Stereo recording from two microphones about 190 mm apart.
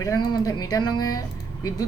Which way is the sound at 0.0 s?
20° left (ahead or behind).